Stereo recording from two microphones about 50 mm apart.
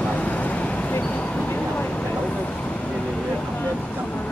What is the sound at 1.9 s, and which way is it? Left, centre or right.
Vehicle, left.